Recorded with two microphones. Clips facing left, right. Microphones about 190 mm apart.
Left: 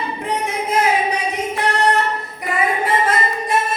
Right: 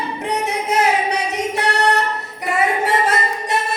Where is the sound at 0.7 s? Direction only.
75° right (ahead or behind).